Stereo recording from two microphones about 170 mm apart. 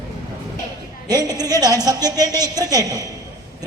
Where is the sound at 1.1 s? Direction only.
20° right (ahead or behind).